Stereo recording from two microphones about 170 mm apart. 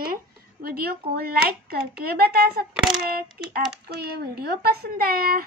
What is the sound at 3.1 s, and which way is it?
A woman's voice, 65° right (ahead or behind).